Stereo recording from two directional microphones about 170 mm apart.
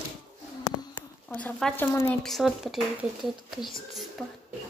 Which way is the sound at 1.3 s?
10° left (ahead or behind).